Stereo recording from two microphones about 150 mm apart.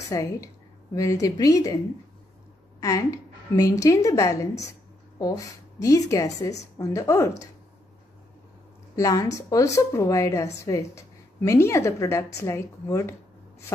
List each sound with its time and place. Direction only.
0.1 s a woman's voice: 20° left (ahead or behind)
2.8 s a woman's voice: 20° left (ahead or behind)
8.9 s a woman's voice: 25° left (ahead or behind)